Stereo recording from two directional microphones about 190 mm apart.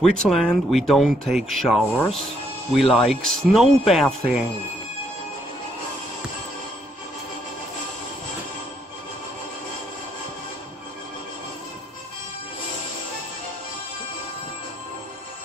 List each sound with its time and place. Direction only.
0.0 s speech: centre (ahead or behind)